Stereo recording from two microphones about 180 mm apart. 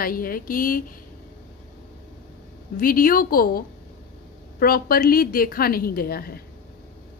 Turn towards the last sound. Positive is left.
turn(degrees=55)  # may be behind; listen again after turning